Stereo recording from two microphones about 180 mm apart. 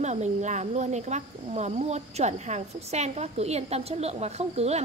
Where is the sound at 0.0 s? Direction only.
40° right (ahead or behind).